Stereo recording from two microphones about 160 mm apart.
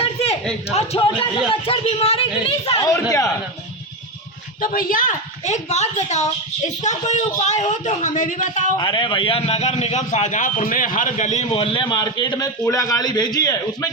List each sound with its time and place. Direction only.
0.0 s a sound: 40° left (ahead or behind)
0.7 s speech: 40° left (ahead or behind)
2.8 s a man's voice: 20° left (ahead or behind)
4.6 s a man's voice: 60° left (ahead or behind)
8.8 s a man's voice: 30° left (ahead or behind)